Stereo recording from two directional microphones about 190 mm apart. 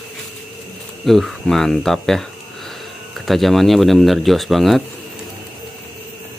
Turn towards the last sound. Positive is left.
turn(degrees=0)  # may be behind; listen again after turning